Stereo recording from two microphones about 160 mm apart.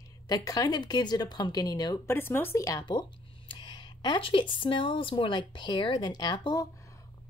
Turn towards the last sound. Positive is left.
turn(degrees=25)  # may be behind; listen again after turning